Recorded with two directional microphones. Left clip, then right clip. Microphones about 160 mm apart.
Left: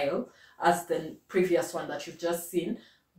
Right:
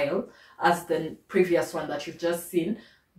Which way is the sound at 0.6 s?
5° left (ahead or behind).